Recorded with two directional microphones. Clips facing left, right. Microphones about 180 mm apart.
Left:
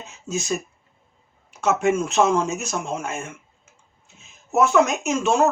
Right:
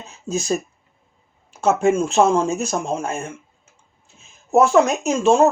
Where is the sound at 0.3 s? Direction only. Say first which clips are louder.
Right 4 dB; 35° right (ahead or behind).